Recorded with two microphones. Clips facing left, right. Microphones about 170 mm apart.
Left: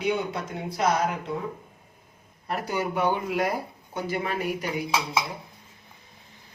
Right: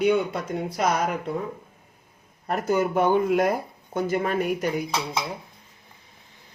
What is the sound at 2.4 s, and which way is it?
Speech, 45° right (ahead or behind).